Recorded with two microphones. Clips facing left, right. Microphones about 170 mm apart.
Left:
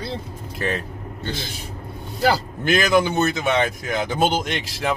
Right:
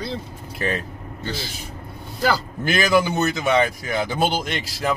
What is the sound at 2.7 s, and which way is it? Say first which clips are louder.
Speech: left 1 dB; 5° right (ahead or behind).